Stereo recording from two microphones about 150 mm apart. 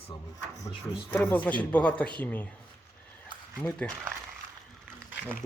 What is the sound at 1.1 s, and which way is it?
Speech, 10° left (ahead or behind).